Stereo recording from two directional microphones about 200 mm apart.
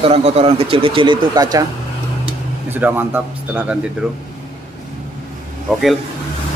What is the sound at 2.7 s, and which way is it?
A man's voice, 10° right (ahead or behind).